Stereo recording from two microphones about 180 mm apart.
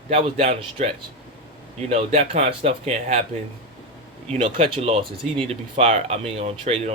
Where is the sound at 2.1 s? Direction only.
35° right (ahead or behind).